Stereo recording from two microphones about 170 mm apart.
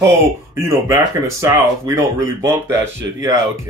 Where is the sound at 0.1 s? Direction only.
15° right (ahead or behind).